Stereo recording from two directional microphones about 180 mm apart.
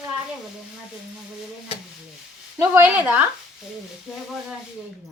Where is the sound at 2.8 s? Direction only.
10° right (ahead or behind).